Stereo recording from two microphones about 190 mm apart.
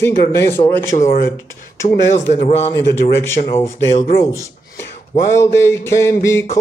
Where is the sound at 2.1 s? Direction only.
35° left (ahead or behind).